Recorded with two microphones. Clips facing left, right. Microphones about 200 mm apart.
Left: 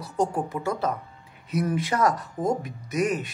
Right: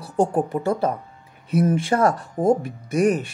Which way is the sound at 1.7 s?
30° right (ahead or behind).